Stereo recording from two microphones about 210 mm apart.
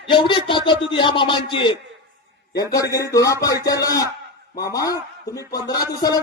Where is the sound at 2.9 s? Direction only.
15° left (ahead or behind).